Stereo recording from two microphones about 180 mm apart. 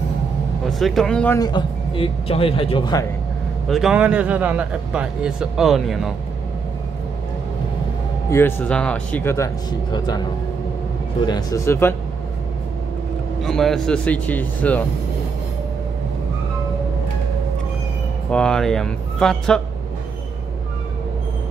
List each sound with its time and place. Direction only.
0.7 s a man's voice: centre (ahead or behind)
1.4 s speech: 30° left (ahead or behind)
3.6 s a man's voice: centre (ahead or behind)
8.3 s speech: 15° left (ahead or behind)
11.2 s speech: 20° left (ahead or behind)
13.4 s speech: centre (ahead or behind)
18.3 s a man's voice: 5° left (ahead or behind)